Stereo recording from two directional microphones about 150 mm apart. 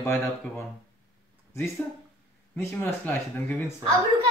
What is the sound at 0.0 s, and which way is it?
Speech, 15° left (ahead or behind).